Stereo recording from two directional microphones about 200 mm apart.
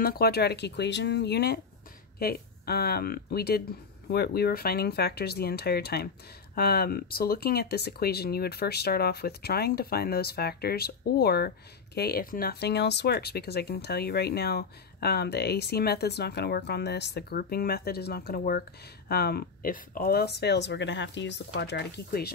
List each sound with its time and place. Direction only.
0.0 s speech: 50° left (ahead or behind)